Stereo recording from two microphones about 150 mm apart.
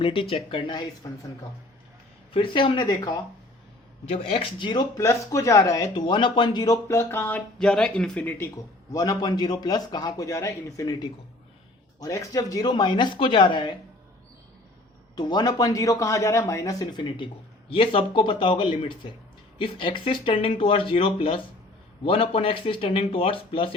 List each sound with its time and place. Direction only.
0.0 s speech: 35° left (ahead or behind)
2.3 s speech: 35° left (ahead or behind)
4.1 s speech: 40° left (ahead or behind)
4.9 s speech: 20° left (ahead or behind)
8.9 s speech: 25° left (ahead or behind)
15.1 s speech: 30° left (ahead or behind)